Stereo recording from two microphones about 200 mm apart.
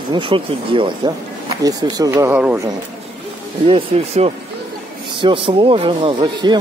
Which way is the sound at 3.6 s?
30° right (ahead or behind).